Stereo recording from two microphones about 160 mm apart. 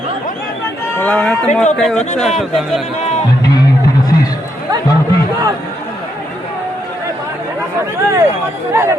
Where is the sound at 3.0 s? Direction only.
45° left (ahead or behind).